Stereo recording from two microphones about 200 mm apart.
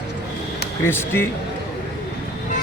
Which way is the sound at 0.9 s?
10° left (ahead or behind).